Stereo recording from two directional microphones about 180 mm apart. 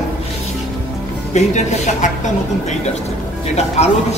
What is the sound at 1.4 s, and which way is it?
Speech, 40° left (ahead or behind).